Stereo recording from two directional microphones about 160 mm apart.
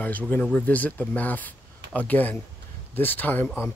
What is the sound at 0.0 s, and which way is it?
Speech, 10° left (ahead or behind).